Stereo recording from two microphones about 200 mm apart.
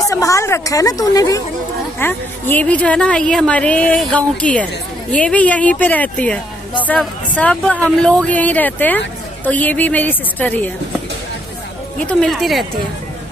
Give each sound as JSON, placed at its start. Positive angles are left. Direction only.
{"t": 0.1, "sound": "speech", "side_deg": 15}
{"t": 12.0, "sound": "speech", "side_deg": 5}